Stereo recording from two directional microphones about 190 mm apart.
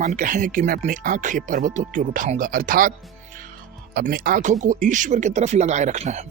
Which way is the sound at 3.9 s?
50° right (ahead or behind).